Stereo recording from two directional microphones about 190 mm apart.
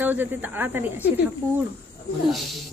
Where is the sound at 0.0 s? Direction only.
10° right (ahead or behind).